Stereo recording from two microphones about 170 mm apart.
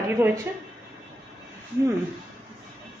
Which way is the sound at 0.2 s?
15° right (ahead or behind).